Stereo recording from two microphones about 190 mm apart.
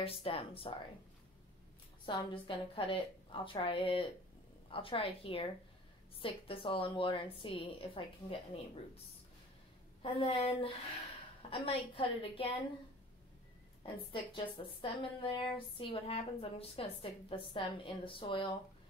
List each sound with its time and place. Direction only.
0.0 s a woman's voice: 30° left (ahead or behind)
2.0 s a woman's voice: 25° left (ahead or behind)
10.0 s a woman's voice: 25° left (ahead or behind)
14.1 s a woman's voice: 25° left (ahead or behind)